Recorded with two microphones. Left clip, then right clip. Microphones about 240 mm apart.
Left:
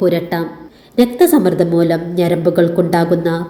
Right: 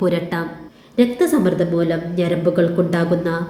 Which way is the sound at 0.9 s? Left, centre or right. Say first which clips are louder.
Left 5 dB; left.